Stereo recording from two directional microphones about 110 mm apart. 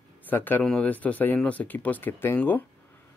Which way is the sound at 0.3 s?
15° left (ahead or behind).